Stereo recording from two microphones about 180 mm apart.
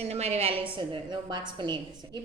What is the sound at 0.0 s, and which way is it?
A woman's voice, 35° right (ahead or behind).